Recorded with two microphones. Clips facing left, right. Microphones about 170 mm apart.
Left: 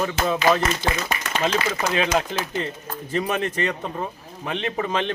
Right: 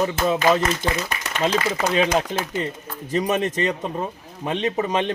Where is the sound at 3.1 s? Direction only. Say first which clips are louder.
Right 3 dB; 20° right (ahead or behind).